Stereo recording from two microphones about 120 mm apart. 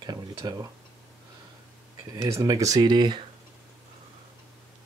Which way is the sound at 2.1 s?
25° right (ahead or behind).